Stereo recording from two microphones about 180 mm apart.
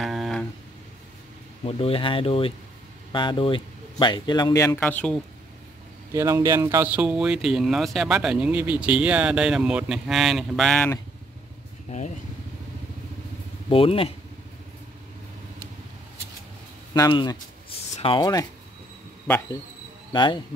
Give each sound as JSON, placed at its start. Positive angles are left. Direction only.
{"t": 0.0, "sound": "a sound", "side_deg": 0}
{"t": 1.7, "sound": "speech", "side_deg": 30}
{"t": 6.1, "sound": "speech", "side_deg": -20}
{"t": 13.7, "sound": "speech", "side_deg": 30}
{"t": 16.9, "sound": "speech", "side_deg": 20}
{"t": 20.1, "sound": "speech", "side_deg": 25}